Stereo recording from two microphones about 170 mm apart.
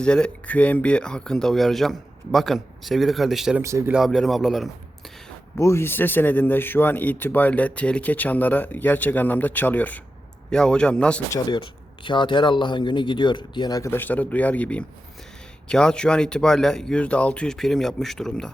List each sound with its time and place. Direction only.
0.0 s speech: 5° left (ahead or behind)
3.6 s speech: 15° right (ahead or behind)
3.9 s a man's voice: centre (ahead or behind)
5.5 s speech: 15° left (ahead or behind)
11.3 s speech: 25° left (ahead or behind); by 18.5 s 5° left (ahead or behind)